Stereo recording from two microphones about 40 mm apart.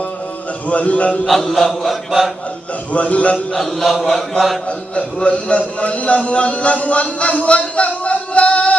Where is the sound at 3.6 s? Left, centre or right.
Centre.